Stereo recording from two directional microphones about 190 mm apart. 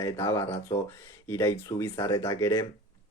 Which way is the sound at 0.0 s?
15° left (ahead or behind).